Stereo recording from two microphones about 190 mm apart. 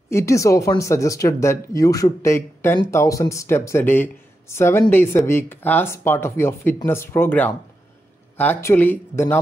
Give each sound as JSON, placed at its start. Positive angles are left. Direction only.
{"t": 0.1, "sound": "speech", "side_deg": 15}